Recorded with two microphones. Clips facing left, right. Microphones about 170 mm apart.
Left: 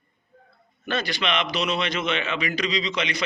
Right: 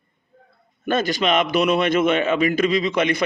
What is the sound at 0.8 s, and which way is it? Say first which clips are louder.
A man's voice: right 7 dB; 45° right (ahead or behind).